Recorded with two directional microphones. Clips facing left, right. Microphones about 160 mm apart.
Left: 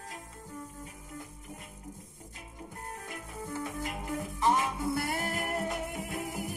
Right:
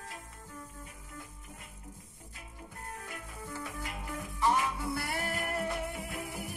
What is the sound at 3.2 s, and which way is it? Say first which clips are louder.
Music: left 4 dB; 45° left (ahead or behind).